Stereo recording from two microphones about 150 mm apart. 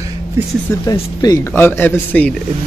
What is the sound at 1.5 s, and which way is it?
Speech, 15° left (ahead or behind).